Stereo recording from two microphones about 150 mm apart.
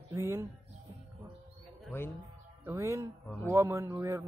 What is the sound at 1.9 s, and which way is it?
Speech, 15° left (ahead or behind).